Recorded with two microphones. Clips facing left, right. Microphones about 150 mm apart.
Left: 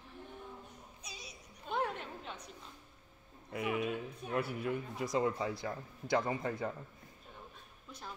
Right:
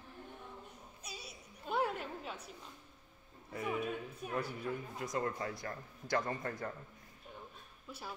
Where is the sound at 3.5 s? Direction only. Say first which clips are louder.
Left 2 dB; 5° left (ahead or behind).